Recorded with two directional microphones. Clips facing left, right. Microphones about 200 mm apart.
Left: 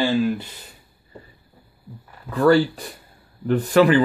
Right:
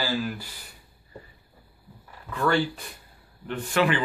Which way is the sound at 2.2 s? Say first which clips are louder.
Left 8 dB; 35° left (ahead or behind).